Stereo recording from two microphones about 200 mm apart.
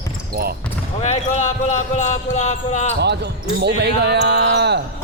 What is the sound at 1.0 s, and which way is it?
Speech, 35° left (ahead or behind).